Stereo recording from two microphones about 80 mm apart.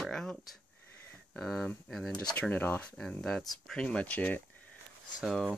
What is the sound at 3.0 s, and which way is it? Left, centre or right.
Speech, centre.